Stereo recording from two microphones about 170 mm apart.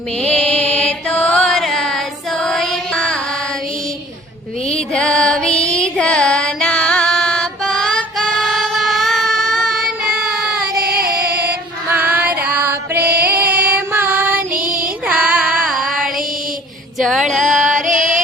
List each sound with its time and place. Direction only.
0.2 s mantra: 5° left (ahead or behind)
4.9 s female singing: 5° left (ahead or behind)
10.8 s female singing: 65° right (ahead or behind)
11.2 s female singing: 5° right (ahead or behind)
11.9 s music: 10° right (ahead or behind)
13.4 s music: 65° right (ahead or behind)
13.7 s child singing: 10° right (ahead or behind)
14.5 s child singing: 55° right (ahead or behind)
15.0 s music: 5° right (ahead or behind)
17.0 s a sound: centre (ahead or behind)
17.4 s music: centre (ahead or behind)
17.7 s music: 50° right (ahead or behind)